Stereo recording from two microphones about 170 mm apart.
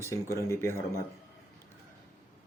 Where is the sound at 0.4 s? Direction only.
15° left (ahead or behind).